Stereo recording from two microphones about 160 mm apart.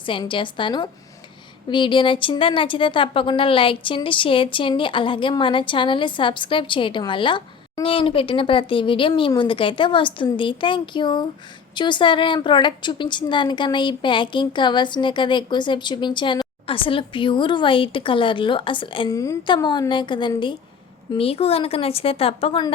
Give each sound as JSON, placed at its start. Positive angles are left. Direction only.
{"t": 0.0, "sound": "a woman's voice", "side_deg": 30}